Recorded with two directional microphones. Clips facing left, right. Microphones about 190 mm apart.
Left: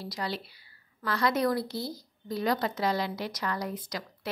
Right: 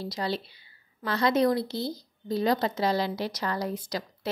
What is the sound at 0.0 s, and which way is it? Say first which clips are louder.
A woman's voice: right 4 dB; 25° right (ahead or behind).